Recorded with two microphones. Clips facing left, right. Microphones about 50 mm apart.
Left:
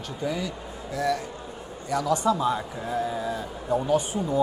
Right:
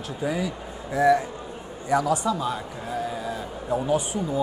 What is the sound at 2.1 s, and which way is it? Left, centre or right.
A man's voice, centre.